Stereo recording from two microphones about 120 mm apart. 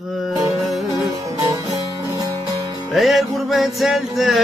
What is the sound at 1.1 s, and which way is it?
Music, 25° right (ahead or behind).